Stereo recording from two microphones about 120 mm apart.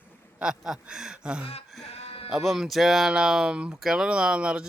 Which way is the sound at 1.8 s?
65° left (ahead or behind).